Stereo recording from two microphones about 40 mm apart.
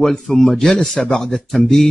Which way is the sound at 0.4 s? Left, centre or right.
Centre.